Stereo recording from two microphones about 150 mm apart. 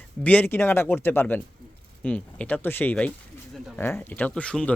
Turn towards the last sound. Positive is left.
turn(degrees=5)  # may be behind; listen again after turning